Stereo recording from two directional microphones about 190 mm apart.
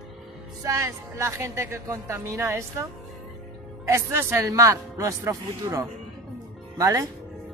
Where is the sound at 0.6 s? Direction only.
15° right (ahead or behind).